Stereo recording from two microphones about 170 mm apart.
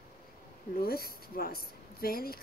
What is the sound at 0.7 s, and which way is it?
Speech, 65° left (ahead or behind).